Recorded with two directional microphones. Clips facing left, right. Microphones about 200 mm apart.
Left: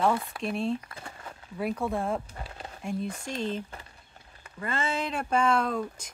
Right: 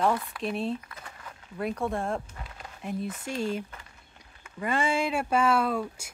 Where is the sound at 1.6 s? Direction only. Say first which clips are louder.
Even; centre (ahead or behind).